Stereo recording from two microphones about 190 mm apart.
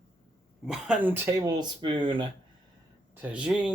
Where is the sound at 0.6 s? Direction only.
5° right (ahead or behind); by 2.2 s 25° right (ahead or behind).